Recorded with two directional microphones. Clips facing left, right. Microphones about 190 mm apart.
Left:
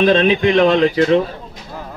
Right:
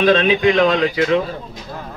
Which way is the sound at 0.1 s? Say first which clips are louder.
Left 1 dB; 30° left (ahead or behind).